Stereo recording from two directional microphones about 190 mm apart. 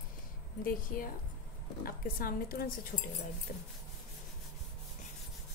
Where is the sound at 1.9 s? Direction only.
50° left (ahead or behind).